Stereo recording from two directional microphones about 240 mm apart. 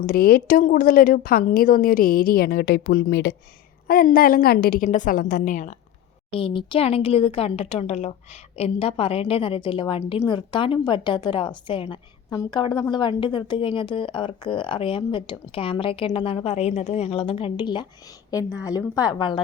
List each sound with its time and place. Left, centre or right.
0.0 s a woman's voice: left
6.3 s a woman's voice: left